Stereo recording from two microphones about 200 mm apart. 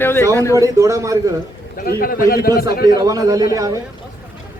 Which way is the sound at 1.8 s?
45° left (ahead or behind).